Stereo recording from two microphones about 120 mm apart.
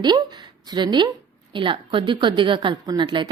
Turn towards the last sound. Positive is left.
turn(degrees=-40)  # may be behind; listen again after turning